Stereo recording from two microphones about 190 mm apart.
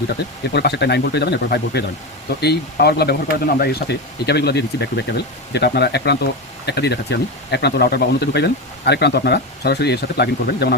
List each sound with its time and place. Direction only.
0.5 s speech: 60° left (ahead or behind)